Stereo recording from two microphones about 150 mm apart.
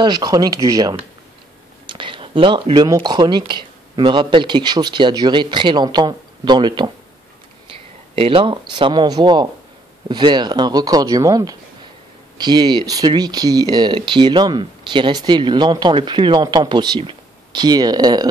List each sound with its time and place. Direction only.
0.0 s speech: 25° right (ahead or behind)
8.2 s speech: 35° right (ahead or behind)